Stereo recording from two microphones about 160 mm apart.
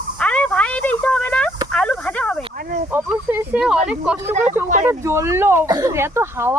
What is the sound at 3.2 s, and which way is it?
Speech, 15° right (ahead or behind).